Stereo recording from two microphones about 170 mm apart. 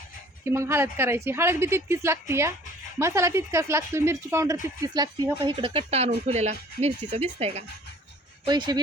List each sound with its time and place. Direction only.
0.4 s a woman's voice: 15° right (ahead or behind); by 7.6 s 35° right (ahead or behind)
8.4 s speech: 25° right (ahead or behind)